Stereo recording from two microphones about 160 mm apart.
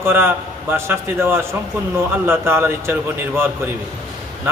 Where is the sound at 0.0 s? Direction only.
15° right (ahead or behind).